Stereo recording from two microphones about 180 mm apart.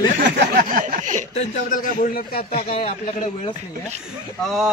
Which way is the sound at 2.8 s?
45° left (ahead or behind).